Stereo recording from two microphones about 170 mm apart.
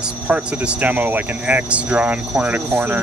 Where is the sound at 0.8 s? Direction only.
10° right (ahead or behind).